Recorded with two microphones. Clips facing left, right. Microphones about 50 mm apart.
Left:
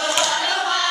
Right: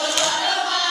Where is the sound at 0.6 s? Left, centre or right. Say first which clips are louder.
Left 2 dB; centre.